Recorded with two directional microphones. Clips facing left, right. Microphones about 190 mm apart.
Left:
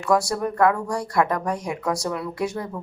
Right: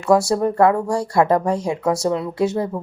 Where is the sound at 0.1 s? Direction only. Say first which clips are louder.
Right 6 dB; 25° right (ahead or behind).